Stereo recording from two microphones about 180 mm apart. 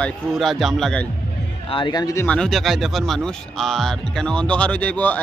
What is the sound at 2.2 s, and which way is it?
Speech, 5° left (ahead or behind).